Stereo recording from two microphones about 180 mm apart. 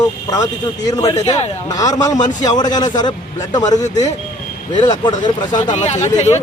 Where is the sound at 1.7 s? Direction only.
20° left (ahead or behind).